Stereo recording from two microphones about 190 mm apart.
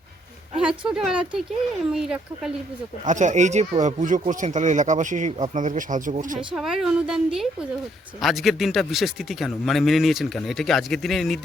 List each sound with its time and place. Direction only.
0.5 s speech: 5° right (ahead or behind)
3.1 s speech: 40° right (ahead or behind)
6.5 s speech: centre (ahead or behind)